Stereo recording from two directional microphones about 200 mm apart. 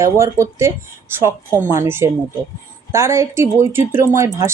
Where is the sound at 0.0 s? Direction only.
15° right (ahead or behind).